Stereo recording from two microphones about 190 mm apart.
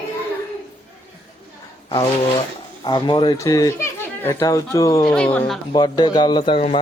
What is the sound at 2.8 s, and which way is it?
Speech, 25° left (ahead or behind).